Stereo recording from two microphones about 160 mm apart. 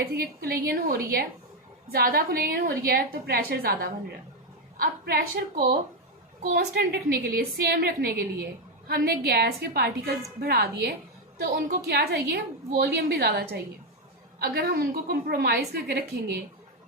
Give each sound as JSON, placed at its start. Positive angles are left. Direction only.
{"t": 0.0, "sound": "a woman's voice", "side_deg": -75}